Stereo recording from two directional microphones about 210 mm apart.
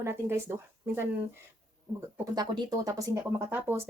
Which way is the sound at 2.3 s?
20° right (ahead or behind).